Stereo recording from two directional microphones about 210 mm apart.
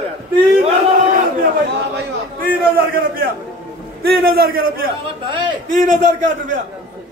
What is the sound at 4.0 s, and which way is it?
Speech, 45° right (ahead or behind).